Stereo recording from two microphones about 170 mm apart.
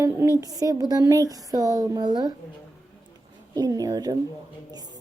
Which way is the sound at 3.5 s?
20° right (ahead or behind).